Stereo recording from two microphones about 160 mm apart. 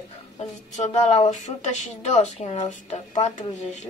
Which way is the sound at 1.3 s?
50° left (ahead or behind).